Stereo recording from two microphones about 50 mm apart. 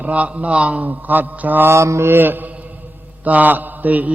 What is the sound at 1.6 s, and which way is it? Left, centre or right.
Mantra, right.